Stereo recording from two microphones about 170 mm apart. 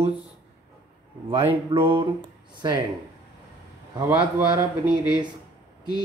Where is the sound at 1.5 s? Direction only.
30° right (ahead or behind).